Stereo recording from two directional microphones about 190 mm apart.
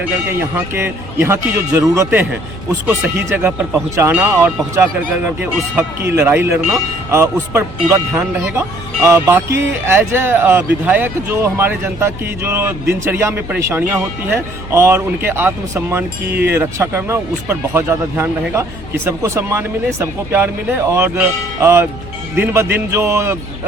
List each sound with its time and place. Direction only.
0.3 s speech: 10° right (ahead or behind)
16.3 s speech: 60° right (ahead or behind)
16.6 s speech: 15° right (ahead or behind)